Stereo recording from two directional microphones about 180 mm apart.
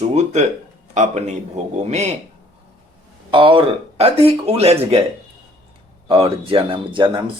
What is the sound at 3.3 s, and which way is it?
Speech, 25° right (ahead or behind).